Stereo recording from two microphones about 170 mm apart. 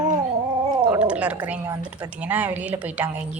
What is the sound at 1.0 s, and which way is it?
A woman's voice, 5° right (ahead or behind).